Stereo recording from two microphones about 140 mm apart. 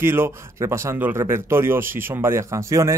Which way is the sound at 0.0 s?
15° right (ahead or behind).